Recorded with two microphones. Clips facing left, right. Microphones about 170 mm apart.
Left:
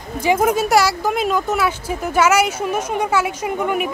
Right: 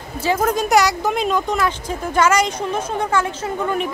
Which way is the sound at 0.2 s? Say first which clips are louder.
Left 2 dB; 10° left (ahead or behind).